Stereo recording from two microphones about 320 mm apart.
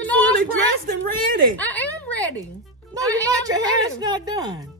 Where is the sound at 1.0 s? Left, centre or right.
Right.